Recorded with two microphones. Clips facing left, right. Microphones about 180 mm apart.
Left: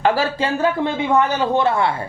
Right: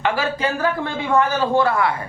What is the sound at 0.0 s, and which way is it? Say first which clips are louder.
A man's voice: left 3 dB; 35° left (ahead or behind).